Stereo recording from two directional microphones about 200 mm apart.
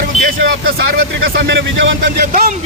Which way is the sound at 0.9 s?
55° right (ahead or behind).